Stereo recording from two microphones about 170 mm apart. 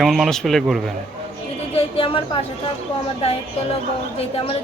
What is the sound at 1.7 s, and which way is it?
Speech, 30° left (ahead or behind).